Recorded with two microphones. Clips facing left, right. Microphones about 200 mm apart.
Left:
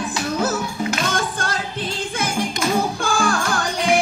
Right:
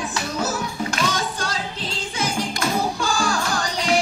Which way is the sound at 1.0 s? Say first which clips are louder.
Left 1 dB; 50° left (ahead or behind).